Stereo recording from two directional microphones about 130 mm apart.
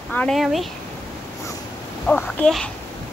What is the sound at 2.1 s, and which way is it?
Speech, 5° left (ahead or behind).